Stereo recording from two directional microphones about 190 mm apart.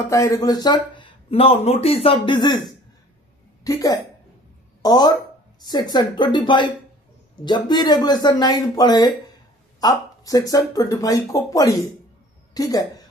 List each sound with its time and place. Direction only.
0.0 s a woman's voice: 15° left (ahead or behind)